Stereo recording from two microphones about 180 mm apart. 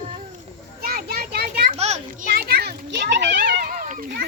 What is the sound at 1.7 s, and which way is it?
Children playing, 35° right (ahead or behind).